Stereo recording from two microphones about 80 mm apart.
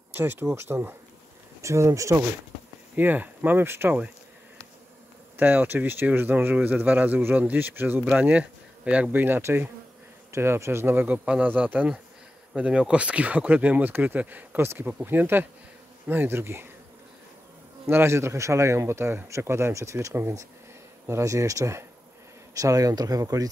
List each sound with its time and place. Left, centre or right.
0.1 s speech: right
1.6 s speech: right
3.0 s speech: right
5.4 s speech: right
17.8 s speech: right